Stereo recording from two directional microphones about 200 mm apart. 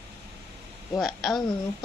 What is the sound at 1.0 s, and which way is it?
Speech, centre (ahead or behind).